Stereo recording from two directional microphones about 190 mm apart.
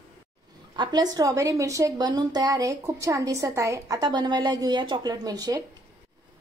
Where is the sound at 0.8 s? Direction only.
20° right (ahead or behind).